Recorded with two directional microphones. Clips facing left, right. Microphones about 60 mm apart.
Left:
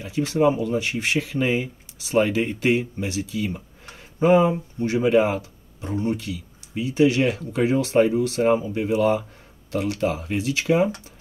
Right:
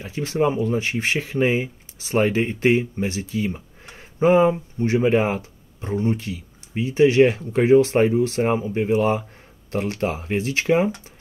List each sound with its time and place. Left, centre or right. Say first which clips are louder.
0.0 s speech: left 2 dB; right